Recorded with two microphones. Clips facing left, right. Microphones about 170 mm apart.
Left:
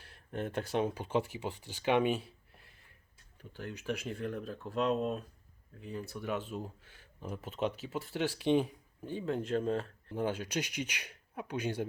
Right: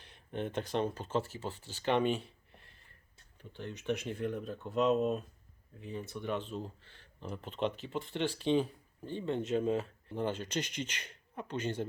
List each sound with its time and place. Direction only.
0.0 s speech: 5° left (ahead or behind)
10.2 s speech: 10° left (ahead or behind)